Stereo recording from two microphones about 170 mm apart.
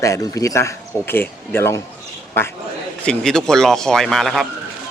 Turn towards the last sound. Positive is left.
turn(degrees=0)  # may be behind; listen again after turning